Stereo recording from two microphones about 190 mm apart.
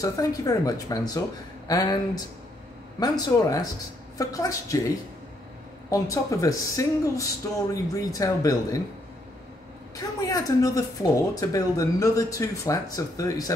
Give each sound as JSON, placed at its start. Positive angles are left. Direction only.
{"t": 0.0, "sound": "speech", "side_deg": 20}
{"t": 3.0, "sound": "speech", "side_deg": 20}
{"t": 9.9, "sound": "speech", "side_deg": 20}